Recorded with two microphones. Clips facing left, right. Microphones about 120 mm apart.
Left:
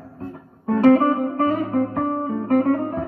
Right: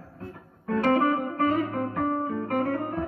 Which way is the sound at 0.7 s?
30° left (ahead or behind).